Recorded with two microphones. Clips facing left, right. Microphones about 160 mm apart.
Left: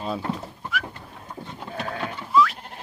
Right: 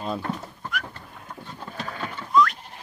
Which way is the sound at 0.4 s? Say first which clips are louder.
Left 2 dB; 5° left (ahead or behind).